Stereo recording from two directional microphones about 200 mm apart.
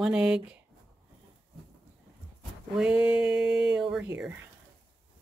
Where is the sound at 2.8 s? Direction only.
10° right (ahead or behind).